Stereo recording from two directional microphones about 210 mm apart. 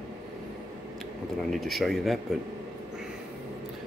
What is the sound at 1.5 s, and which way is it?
Speech, centre (ahead or behind).